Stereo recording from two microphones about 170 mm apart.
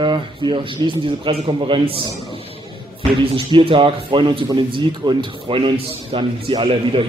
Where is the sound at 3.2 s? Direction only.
30° right (ahead or behind).